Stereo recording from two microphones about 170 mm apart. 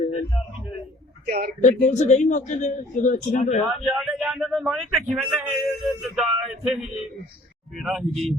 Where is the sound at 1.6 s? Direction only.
45° left (ahead or behind).